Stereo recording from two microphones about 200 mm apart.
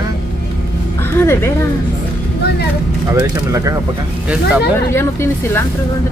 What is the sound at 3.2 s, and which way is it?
Speech, 15° right (ahead or behind).